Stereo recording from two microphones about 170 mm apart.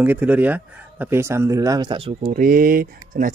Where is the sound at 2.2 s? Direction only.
55° right (ahead or behind).